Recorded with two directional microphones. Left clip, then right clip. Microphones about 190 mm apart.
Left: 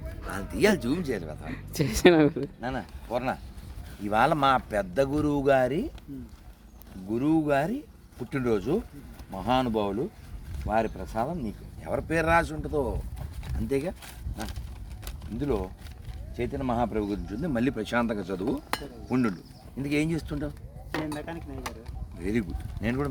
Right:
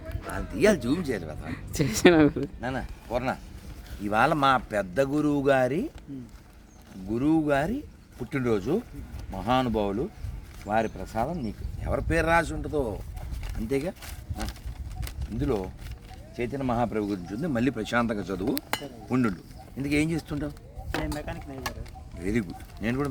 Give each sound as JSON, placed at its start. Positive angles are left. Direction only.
{"t": 0.3, "sound": "speech", "side_deg": 50}
{"t": 1.0, "sound": "speech", "side_deg": 0}
{"t": 7.1, "sound": "speech", "side_deg": 5}
{"t": 15.0, "sound": "a sound", "side_deg": -5}
{"t": 16.3, "sound": "speech", "side_deg": 0}
{"t": 20.9, "sound": "speech", "side_deg": -20}
{"t": 22.2, "sound": "speech", "side_deg": 0}